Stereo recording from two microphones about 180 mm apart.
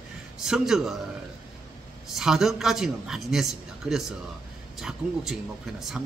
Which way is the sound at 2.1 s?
Centre (ahead or behind).